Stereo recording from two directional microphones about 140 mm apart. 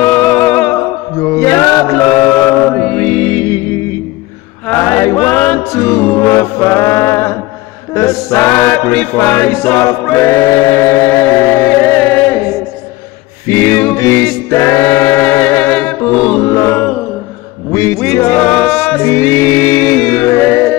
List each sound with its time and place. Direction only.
0.0 s music: 10° left (ahead or behind)
1.3 s choir: 20° left (ahead or behind)
4.7 s chant: 20° left (ahead or behind)
5.1 s music: 10° left (ahead or behind)
13.5 s choir: 15° left (ahead or behind)
16.4 s mantra: 20° left (ahead or behind)
17.7 s music: 20° left (ahead or behind)
18.3 s music: 10° left (ahead or behind)